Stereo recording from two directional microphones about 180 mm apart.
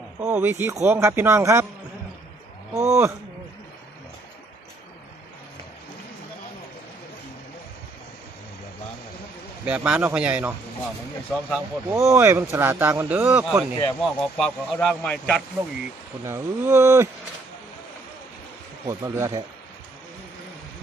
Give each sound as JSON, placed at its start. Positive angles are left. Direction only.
{"t": 0.2, "sound": "speech", "side_deg": -10}
{"t": 2.7, "sound": "speech", "side_deg": -15}
{"t": 9.6, "sound": "speech", "side_deg": -5}
{"t": 11.9, "sound": "speech", "side_deg": -15}
{"t": 14.0, "sound": "speech", "side_deg": 0}
{"t": 16.2, "sound": "speech", "side_deg": -15}
{"t": 18.9, "sound": "speech", "side_deg": -15}